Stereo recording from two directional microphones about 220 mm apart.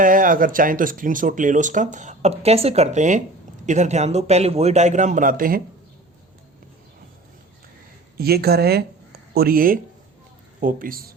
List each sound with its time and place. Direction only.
0.0 s speech: 35° right (ahead or behind)
8.2 s speech: 45° right (ahead or behind)